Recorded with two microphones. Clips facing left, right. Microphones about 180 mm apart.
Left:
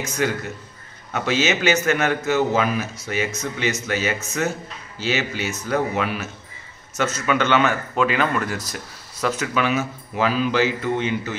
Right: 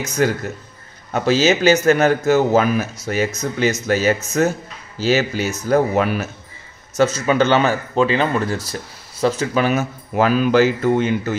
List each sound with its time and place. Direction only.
0.2 s a man's voice: 40° right (ahead or behind)